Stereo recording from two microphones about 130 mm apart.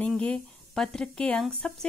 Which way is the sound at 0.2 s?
5° left (ahead or behind).